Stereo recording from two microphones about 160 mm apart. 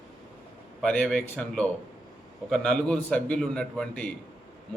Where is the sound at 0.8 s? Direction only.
5° left (ahead or behind).